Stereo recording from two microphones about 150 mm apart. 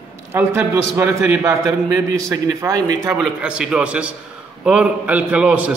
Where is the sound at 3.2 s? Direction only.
5° right (ahead or behind).